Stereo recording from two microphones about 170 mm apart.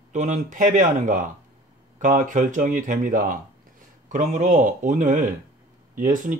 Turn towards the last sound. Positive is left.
turn(degrees=-50)  # may be behind; listen again after turning